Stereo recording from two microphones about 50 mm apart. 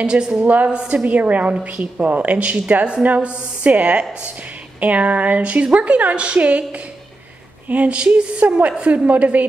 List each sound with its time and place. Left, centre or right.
0.0 s a woman's voice: centre